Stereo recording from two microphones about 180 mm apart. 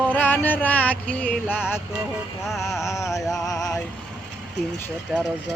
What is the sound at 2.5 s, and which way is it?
Speech, centre (ahead or behind).